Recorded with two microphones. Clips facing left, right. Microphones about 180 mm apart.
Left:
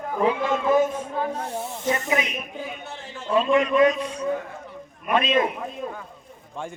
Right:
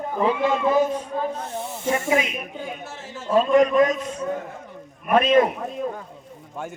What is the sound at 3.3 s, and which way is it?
A man's voice, 45° right (ahead or behind).